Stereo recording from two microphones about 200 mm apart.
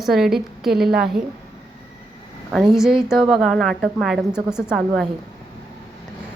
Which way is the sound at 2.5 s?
Centre (ahead or behind).